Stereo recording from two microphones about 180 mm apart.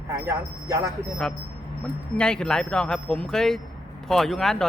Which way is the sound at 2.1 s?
5° left (ahead or behind).